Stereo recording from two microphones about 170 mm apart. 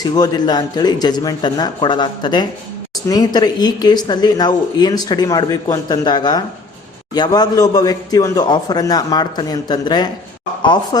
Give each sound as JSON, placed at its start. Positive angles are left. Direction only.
{"t": 0.0, "sound": "speech", "side_deg": 25}